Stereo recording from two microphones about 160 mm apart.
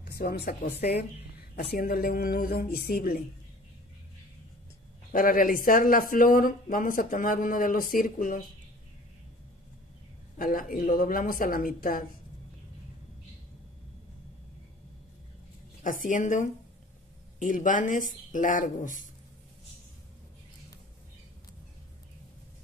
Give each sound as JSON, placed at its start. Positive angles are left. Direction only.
{"t": 0.0, "sound": "speech", "side_deg": 75}
{"t": 1.7, "sound": "speech", "side_deg": 65}
{"t": 5.1, "sound": "speech", "side_deg": 60}
{"t": 10.3, "sound": "speech", "side_deg": 55}
{"t": 15.8, "sound": "speech", "side_deg": 55}